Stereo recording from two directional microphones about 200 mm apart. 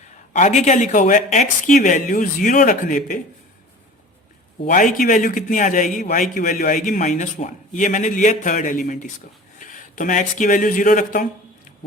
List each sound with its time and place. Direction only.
0.3 s a man's voice: 35° left (ahead or behind)
4.6 s a man's voice: 40° left (ahead or behind)